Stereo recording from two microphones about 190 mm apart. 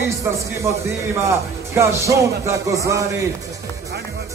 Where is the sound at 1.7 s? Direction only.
15° right (ahead or behind).